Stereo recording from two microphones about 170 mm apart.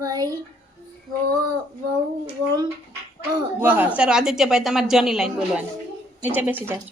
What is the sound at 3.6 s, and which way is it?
A child's voice, 10° right (ahead or behind).